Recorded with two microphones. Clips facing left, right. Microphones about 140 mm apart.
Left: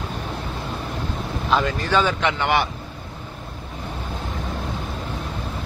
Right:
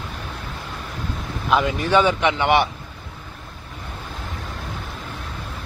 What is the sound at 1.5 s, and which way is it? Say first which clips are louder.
Speech: right 2 dB; 10° right (ahead or behind).